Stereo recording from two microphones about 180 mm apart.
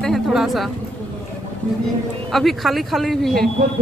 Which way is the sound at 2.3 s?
Centre (ahead or behind).